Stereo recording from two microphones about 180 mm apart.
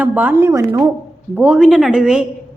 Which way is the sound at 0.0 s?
10° right (ahead or behind).